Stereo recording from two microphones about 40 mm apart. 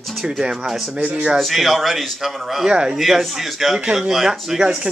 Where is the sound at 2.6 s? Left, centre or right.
Right.